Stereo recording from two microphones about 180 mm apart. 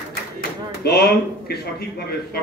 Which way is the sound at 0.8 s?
60° left (ahead or behind).